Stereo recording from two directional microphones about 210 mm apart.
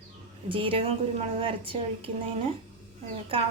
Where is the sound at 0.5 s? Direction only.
25° right (ahead or behind).